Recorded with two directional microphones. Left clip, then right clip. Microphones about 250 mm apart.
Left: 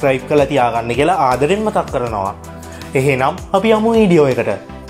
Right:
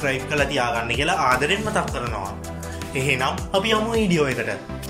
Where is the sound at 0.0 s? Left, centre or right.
Centre.